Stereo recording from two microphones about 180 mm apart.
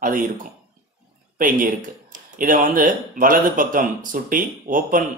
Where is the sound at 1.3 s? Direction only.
50° right (ahead or behind).